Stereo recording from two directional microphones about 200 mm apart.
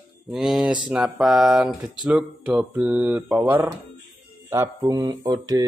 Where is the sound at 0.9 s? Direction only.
5° right (ahead or behind).